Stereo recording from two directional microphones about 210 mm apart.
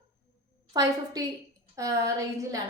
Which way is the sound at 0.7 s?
15° right (ahead or behind).